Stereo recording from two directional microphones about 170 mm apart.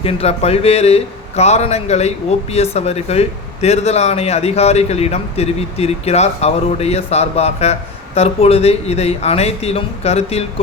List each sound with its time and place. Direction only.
0.0 s speech: 35° left (ahead or behind)